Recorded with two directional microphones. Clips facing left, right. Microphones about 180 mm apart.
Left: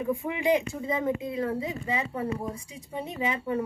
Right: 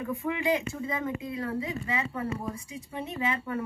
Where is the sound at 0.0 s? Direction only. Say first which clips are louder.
Left 2 dB; 15° left (ahead or behind).